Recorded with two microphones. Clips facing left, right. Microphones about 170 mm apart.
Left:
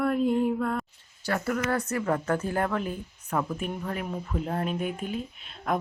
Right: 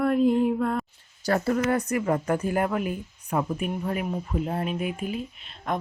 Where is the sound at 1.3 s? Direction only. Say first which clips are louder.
Right 4 dB; 30° right (ahead or behind).